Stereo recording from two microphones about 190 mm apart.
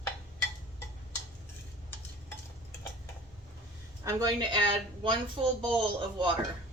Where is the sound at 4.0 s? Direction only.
15° right (ahead or behind).